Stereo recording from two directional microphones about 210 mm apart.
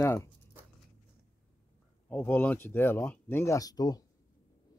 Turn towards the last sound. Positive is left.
turn(degrees=20)  # may be behind; listen again after turning